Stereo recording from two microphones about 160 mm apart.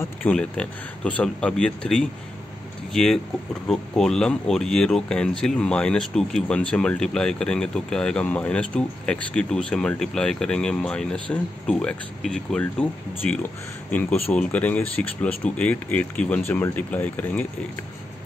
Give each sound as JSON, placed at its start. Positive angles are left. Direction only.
{"t": 0.0, "sound": "speech", "side_deg": 10}